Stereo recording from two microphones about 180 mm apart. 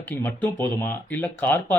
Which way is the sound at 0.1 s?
10° left (ahead or behind).